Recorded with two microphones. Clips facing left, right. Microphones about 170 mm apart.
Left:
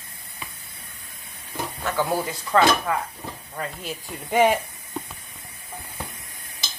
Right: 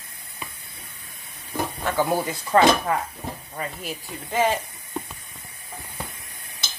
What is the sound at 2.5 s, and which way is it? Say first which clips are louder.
Speech: right 2 dB; 30° right (ahead or behind).